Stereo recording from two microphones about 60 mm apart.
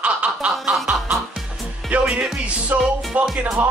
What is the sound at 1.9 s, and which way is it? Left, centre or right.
Music, right.